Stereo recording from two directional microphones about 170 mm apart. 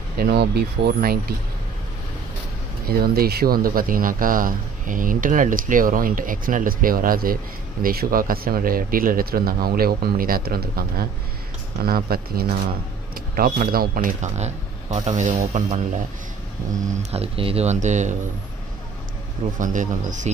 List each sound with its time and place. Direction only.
0.2 s speech: 70° right (ahead or behind)
2.9 s speech: 60° right (ahead or behind); by 15.8 s 40° right (ahead or behind)
17.1 s speech: 35° right (ahead or behind)
19.6 s speech: 50° right (ahead or behind)